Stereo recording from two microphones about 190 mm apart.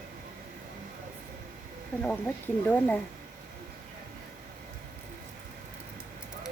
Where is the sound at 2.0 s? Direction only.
5° left (ahead or behind).